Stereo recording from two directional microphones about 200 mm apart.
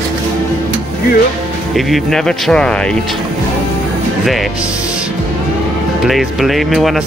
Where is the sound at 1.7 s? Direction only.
Centre (ahead or behind).